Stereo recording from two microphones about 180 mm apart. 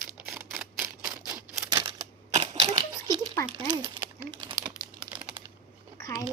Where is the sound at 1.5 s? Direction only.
25° right (ahead or behind).